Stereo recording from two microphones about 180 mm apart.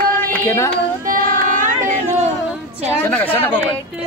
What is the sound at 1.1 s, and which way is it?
Child singing, 50° right (ahead or behind).